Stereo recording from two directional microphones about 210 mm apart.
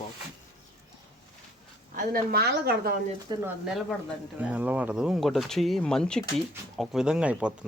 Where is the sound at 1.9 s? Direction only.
40° right (ahead or behind).